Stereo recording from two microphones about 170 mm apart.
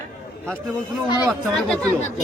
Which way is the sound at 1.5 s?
5° left (ahead or behind).